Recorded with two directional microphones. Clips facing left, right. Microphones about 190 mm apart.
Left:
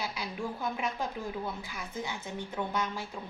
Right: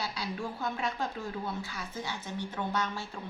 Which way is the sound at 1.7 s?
20° left (ahead or behind).